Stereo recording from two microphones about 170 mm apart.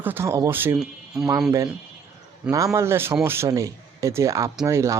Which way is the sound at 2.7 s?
15° right (ahead or behind).